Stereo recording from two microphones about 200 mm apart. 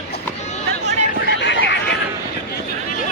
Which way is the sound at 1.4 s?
65° left (ahead or behind).